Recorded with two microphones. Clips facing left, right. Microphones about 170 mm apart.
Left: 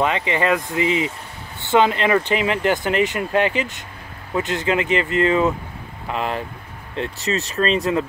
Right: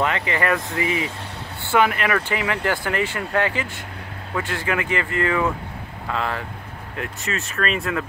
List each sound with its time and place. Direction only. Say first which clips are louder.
0.0 s speech: left 2 dB; 20° left (ahead or behind)